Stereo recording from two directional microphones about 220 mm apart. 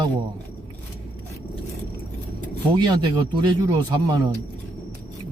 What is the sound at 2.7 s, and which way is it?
Speech, 20° right (ahead or behind).